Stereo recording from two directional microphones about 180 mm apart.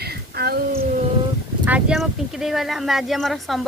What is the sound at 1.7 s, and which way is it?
A woman's voice, centre (ahead or behind).